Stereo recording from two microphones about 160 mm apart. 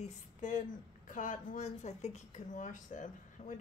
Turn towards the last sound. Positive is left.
turn(degrees=50)  # may be behind; listen again after turning